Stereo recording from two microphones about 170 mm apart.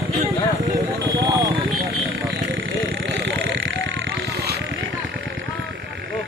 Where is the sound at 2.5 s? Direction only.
90° right.